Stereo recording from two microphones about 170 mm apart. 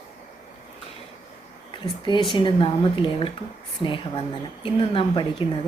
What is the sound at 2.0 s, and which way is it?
A woman's voice, 30° left (ahead or behind).